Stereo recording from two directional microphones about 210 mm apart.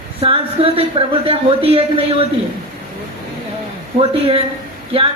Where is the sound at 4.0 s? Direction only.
25° right (ahead or behind).